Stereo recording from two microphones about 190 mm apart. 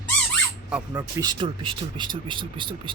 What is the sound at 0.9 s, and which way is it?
Speech, 20° right (ahead or behind).